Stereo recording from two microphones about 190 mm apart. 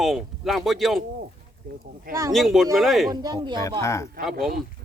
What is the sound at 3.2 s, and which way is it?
Speech, 20° right (ahead or behind).